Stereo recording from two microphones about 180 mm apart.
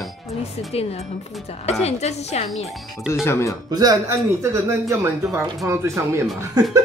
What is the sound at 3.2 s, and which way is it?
Speech, 15° left (ahead or behind).